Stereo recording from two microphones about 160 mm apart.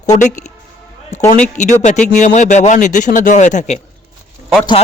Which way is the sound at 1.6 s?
50° left (ahead or behind).